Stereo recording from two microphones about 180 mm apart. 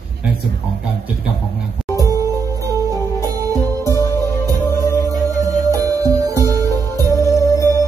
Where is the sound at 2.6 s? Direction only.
20° right (ahead or behind).